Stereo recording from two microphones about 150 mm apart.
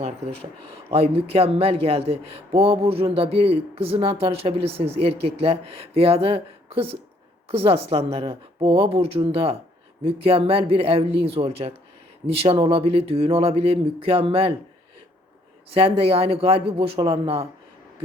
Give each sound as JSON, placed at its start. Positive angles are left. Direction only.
{"t": 0.2, "sound": "a man's voice", "side_deg": -45}
{"t": 15.7, "sound": "a man's voice", "side_deg": -40}